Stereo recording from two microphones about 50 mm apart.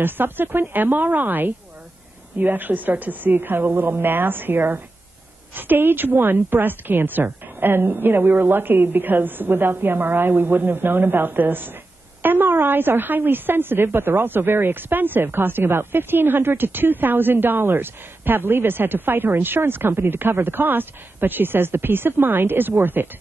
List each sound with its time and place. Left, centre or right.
0.0 s a woman's voice: right